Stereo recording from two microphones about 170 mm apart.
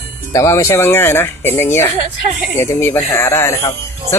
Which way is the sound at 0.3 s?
20° left (ahead or behind).